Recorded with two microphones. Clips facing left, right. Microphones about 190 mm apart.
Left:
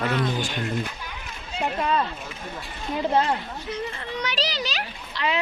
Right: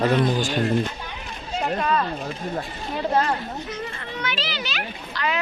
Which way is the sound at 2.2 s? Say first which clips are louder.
Right 7 dB; 40° right (ahead or behind).